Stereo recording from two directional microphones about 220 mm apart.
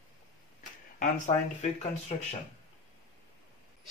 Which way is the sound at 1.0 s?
30° left (ahead or behind).